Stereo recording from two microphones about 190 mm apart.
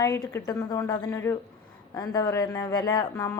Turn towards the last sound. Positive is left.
turn(degrees=15)  # may be behind; listen again after turning